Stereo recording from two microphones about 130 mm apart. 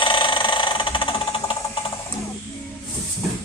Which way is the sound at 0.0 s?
40° left (ahead or behind).